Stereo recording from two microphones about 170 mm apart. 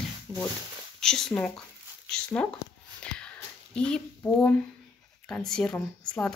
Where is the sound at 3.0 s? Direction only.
5° left (ahead or behind).